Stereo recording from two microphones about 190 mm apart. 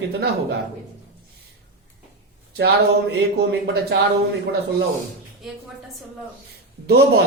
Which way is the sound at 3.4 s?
60° right (ahead or behind).